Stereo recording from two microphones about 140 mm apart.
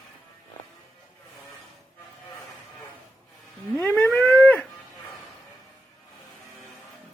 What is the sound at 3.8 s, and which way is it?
Siren, 10° left (ahead or behind).